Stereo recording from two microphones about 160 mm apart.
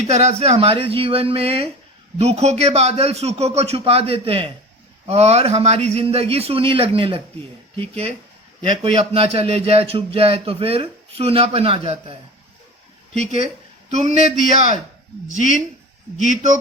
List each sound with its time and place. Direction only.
0.1 s speech: 40° right (ahead or behind)
13.9 s speech: 45° right (ahead or behind)
15.4 s speech: 55° left (ahead or behind)
16.2 s speech: 50° right (ahead or behind)